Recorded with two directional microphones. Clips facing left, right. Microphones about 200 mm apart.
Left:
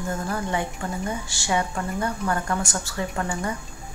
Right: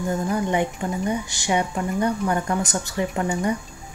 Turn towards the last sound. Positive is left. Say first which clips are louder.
# right 5 dB
turn(degrees=-20)  # may be behind; listen again after turning